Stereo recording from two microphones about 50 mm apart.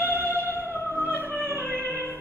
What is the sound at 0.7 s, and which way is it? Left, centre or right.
Music, left.